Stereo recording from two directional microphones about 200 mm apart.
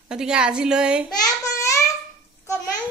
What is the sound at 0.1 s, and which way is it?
Speech, 5° right (ahead or behind).